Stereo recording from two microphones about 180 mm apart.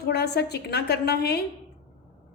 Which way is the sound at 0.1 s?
65° left (ahead or behind).